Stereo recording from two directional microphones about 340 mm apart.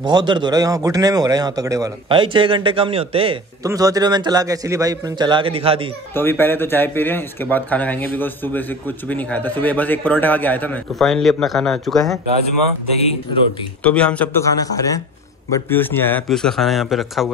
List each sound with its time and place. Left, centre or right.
0.0 s speech: centre
6.1 s speech: centre
12.9 s speech: centre
13.8 s speech: centre